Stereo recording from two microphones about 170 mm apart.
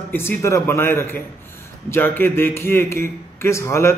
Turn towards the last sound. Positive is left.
turn(degrees=15)  # may be behind; listen again after turning